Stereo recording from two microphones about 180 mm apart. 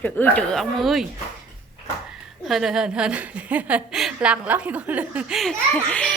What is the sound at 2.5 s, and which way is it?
A woman's voice, centre (ahead or behind).